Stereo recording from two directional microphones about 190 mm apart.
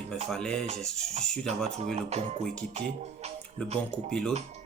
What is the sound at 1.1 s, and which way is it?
Speech, 35° right (ahead or behind).